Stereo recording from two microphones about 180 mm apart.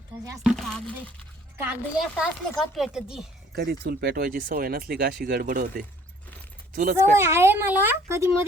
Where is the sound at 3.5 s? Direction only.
60° right (ahead or behind).